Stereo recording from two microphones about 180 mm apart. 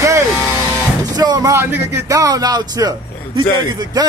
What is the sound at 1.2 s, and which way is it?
A man's voice, 20° right (ahead or behind).